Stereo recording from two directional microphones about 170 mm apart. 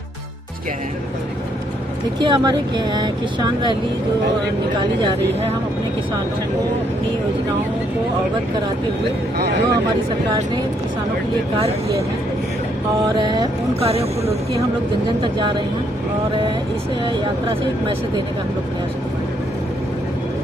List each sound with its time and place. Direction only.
2.1 s speech: 25° right (ahead or behind)
13.1 s speech: 25° right (ahead or behind)